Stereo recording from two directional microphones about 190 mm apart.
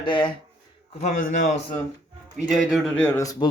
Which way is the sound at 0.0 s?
25° left (ahead or behind).